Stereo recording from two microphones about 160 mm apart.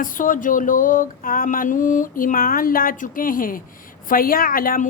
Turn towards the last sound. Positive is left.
turn(degrees=60)  # may be behind; listen again after turning